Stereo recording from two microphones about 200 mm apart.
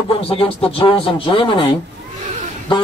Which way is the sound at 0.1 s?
30° left (ahead or behind).